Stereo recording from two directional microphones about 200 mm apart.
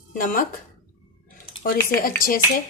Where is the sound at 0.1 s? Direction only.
45° left (ahead or behind).